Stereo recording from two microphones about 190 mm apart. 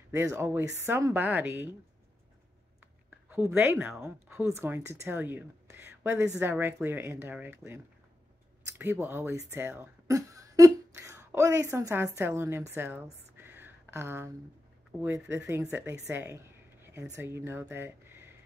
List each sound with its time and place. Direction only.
0.1 s speech: 15° right (ahead or behind)
3.3 s speech: 10° right (ahead or behind)